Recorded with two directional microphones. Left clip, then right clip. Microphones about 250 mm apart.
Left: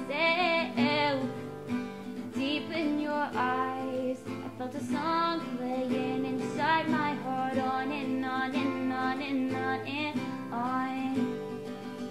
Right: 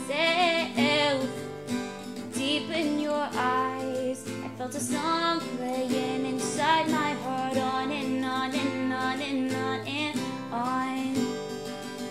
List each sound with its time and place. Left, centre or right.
0.1 s music: right
2.4 s music: right
4.9 s music: right